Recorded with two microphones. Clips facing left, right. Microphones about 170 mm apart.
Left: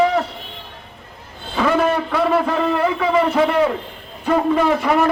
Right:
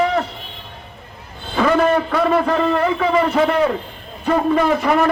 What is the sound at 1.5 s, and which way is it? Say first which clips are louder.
A man's voice: right 2 dB; 5° left (ahead or behind).